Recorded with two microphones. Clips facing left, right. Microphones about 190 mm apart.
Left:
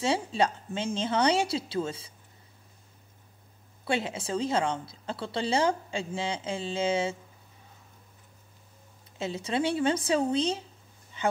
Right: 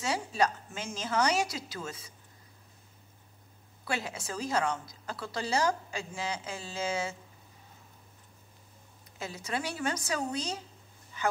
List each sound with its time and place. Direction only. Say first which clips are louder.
0.0 s a woman's voice: left 3 dB; 30° left (ahead or behind)
3.8 s a woman's voice: left 5 dB; 25° left (ahead or behind)
9.2 s a woman's voice: left 7 dB; 25° left (ahead or behind)